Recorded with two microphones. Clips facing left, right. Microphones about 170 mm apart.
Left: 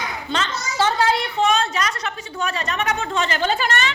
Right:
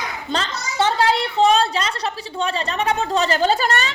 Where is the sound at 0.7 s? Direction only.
25° right (ahead or behind).